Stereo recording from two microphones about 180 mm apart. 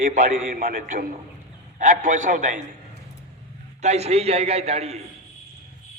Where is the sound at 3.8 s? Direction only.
35° right (ahead or behind).